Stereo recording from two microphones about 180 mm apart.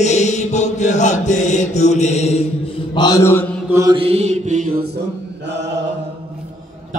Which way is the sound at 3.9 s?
35° right (ahead or behind).